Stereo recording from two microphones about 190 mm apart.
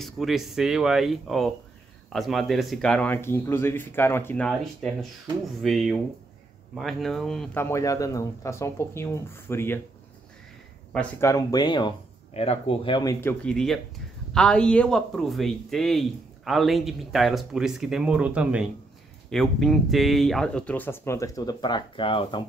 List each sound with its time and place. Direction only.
0.0 s speech: centre (ahead or behind)
10.9 s speech: 5° left (ahead or behind)
11.2 s speech: 20° left (ahead or behind)
13.2 s speech: 10° left (ahead or behind); by 22.4 s 25° left (ahead or behind)